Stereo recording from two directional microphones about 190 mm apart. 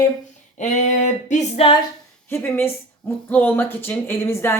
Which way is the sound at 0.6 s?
40° left (ahead or behind).